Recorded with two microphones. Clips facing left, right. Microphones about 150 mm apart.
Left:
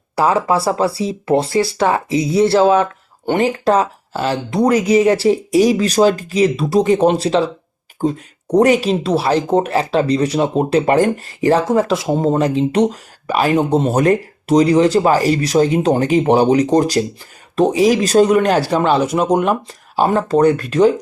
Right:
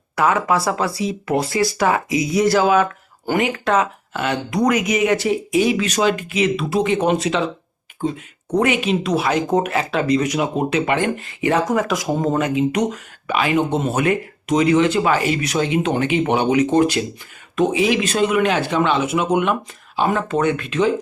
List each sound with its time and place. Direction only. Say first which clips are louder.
0.2 s speech: left 3 dB; 30° left (ahead or behind)